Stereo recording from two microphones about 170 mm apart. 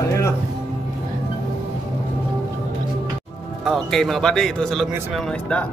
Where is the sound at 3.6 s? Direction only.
Centre (ahead or behind).